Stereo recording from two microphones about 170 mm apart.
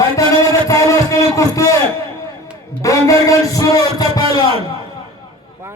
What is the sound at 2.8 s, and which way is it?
A man's voice, 20° left (ahead or behind).